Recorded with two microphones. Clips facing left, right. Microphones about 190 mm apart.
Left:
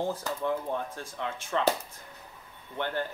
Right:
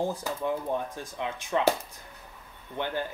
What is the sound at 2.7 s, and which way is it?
Speech, 15° right (ahead or behind).